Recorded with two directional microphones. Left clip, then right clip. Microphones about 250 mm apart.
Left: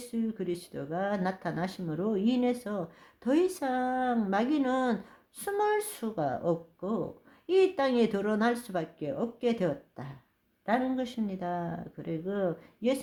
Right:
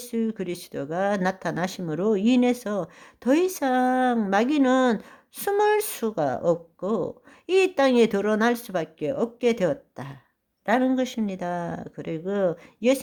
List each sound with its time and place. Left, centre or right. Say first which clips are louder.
0.0 s speech: right 6 dB; right